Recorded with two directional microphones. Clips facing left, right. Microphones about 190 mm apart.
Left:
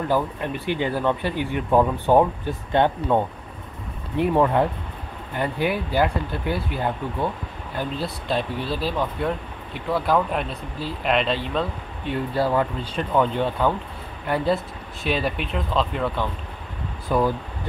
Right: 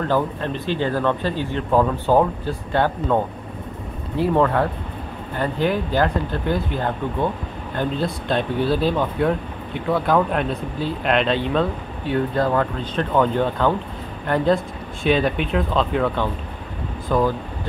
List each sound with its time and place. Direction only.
0.1 s speech: 15° left (ahead or behind)
4.2 s speech: 15° left (ahead or behind)